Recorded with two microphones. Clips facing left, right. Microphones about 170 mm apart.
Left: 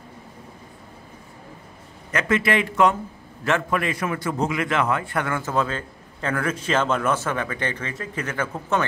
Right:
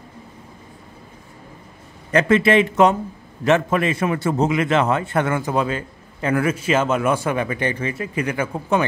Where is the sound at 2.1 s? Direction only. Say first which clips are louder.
Right 7 dB; 30° right (ahead or behind).